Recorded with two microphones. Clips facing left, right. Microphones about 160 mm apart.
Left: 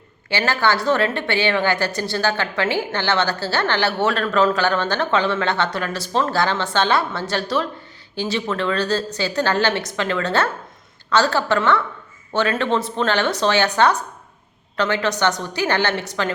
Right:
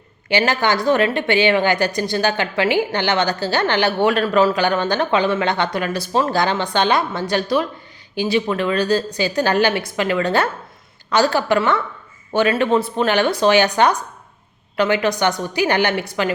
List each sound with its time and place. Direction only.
0.3 s a woman's voice: 15° right (ahead or behind)